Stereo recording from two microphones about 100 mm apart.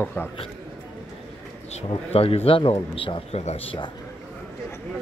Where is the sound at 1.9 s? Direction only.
75° left (ahead or behind).